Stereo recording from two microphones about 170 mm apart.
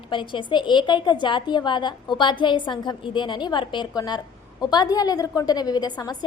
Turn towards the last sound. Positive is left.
turn(degrees=25)  # may be behind; listen again after turning